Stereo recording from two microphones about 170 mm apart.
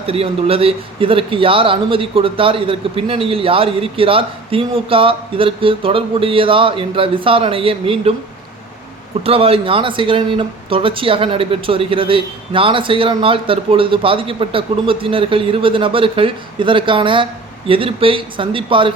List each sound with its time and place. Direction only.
0.1 s a man's voice: 35° right (ahead or behind)
9.2 s a man's voice: 35° right (ahead or behind)